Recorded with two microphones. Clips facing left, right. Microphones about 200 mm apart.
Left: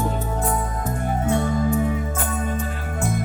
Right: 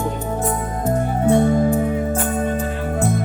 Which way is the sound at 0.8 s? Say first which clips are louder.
Right 7 dB; 30° right (ahead or behind).